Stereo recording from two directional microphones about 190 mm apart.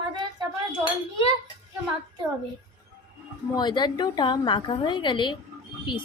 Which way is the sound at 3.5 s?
25° left (ahead or behind).